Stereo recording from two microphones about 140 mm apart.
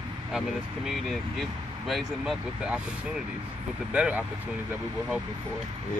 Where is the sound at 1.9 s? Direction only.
Centre (ahead or behind).